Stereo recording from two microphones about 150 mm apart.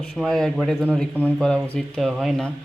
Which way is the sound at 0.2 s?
5° left (ahead or behind).